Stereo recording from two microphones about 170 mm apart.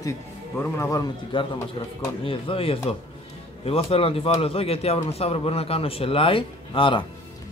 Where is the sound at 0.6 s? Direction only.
15° left (ahead or behind).